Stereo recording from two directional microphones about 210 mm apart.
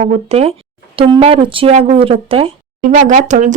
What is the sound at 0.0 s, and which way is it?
Speech, 30° right (ahead or behind).